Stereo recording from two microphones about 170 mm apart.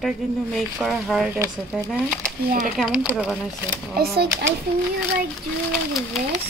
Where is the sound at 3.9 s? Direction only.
65° right (ahead or behind).